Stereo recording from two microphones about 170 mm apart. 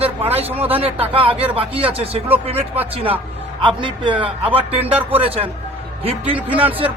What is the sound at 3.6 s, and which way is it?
Speech, 30° right (ahead or behind).